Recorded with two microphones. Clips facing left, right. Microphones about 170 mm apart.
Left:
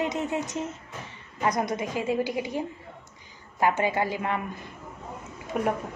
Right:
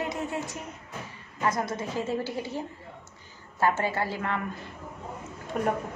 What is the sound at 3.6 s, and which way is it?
Speech, 15° left (ahead or behind).